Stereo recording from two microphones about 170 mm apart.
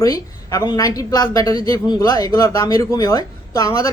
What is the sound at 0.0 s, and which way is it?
A man's voice, 20° left (ahead or behind).